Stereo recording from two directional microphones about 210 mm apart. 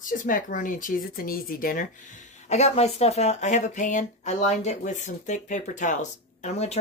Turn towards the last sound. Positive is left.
turn(degrees=35)  # may be behind; listen again after turning